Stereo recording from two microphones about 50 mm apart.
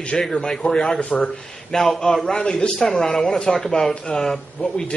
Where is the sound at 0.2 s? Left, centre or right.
Centre.